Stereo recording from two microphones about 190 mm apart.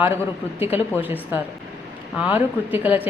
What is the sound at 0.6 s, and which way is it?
A woman's voice, 10° right (ahead or behind).